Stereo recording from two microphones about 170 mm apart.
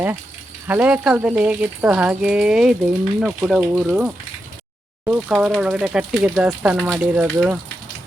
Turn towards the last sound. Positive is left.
turn(degrees=-15)  # may be behind; listen again after turning